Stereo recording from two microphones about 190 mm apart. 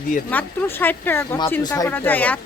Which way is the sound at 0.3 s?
10° left (ahead or behind).